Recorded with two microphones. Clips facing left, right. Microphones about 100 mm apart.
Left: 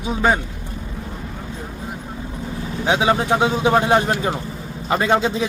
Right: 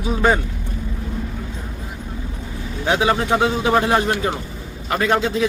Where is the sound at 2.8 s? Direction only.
15° left (ahead or behind).